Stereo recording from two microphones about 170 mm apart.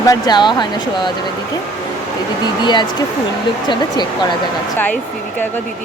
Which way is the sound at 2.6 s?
25° left (ahead or behind).